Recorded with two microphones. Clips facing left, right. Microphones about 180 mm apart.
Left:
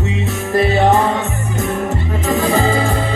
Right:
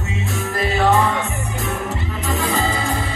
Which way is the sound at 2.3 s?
45° left (ahead or behind).